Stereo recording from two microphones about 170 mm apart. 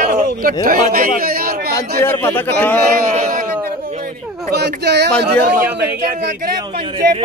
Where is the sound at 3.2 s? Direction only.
60° right (ahead or behind).